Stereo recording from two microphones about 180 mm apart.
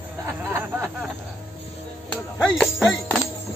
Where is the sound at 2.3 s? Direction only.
5° left (ahead or behind).